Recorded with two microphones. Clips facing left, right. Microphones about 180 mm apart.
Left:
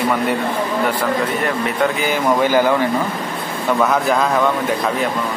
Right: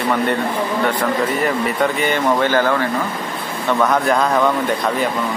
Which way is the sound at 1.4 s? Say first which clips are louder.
Even; centre (ahead or behind).